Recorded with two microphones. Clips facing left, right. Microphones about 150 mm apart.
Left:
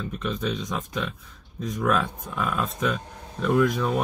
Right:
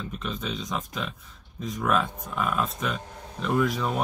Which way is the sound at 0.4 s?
5° right (ahead or behind).